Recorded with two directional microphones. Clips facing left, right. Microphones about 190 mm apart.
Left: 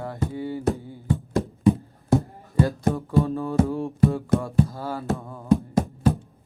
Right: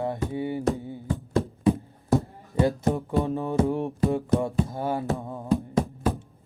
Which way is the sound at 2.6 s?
15° right (ahead or behind).